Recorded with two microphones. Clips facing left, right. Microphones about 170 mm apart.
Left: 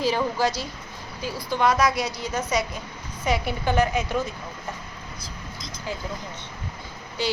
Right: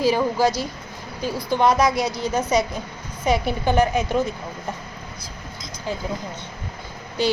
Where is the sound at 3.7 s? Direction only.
15° right (ahead or behind).